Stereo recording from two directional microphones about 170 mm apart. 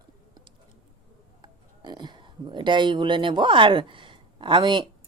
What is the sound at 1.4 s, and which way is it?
A woman's voice, 25° right (ahead or behind).